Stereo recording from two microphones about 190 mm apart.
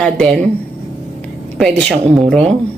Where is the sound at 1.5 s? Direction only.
Centre (ahead or behind).